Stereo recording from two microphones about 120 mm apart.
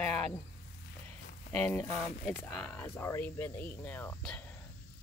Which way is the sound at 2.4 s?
15° left (ahead or behind).